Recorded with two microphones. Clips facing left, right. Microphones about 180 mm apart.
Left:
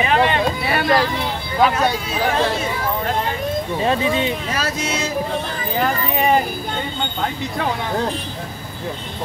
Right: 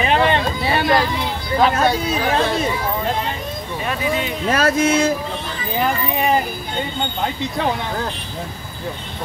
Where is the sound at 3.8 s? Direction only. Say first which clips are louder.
Left 2 dB; 25° left (ahead or behind).